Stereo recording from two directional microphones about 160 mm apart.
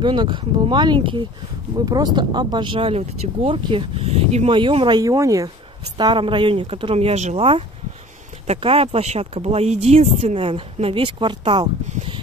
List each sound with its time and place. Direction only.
0.0 s speech: 30° right (ahead or behind)